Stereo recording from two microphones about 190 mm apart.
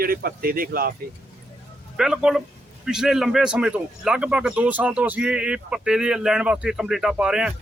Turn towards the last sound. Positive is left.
turn(degrees=-5)  # may be behind; listen again after turning